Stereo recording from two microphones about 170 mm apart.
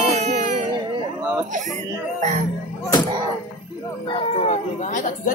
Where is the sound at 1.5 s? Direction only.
45° right (ahead or behind).